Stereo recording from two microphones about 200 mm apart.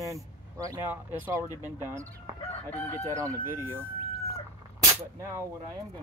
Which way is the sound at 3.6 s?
10° right (ahead or behind).